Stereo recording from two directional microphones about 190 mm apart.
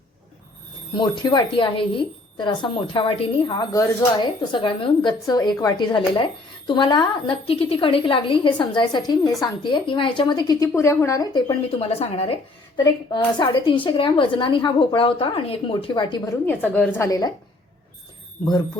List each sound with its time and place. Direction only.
0.9 s a woman's voice: 20° left (ahead or behind)
16.5 s a woman's voice: 5° left (ahead or behind)
17.1 s a woman's voice: 20° left (ahead or behind)